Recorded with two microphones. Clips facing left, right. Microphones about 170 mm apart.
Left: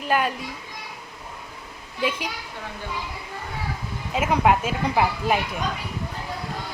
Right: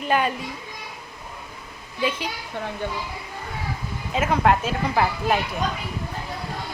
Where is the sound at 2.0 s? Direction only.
10° left (ahead or behind).